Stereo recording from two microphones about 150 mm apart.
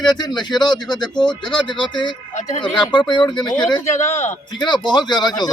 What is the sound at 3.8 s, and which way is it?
Speech, 50° left (ahead or behind).